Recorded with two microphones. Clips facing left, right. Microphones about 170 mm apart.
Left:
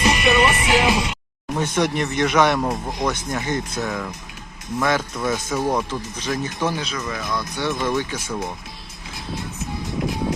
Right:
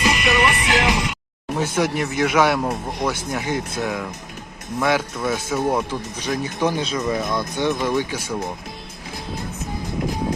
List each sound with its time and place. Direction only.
0.0 s music: 30° left (ahead or behind)
0.3 s music: 15° left (ahead or behind)
1.5 s speech: 5° right (ahead or behind)